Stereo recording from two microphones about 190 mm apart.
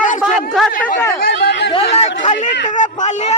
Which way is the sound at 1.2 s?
60° left (ahead or behind).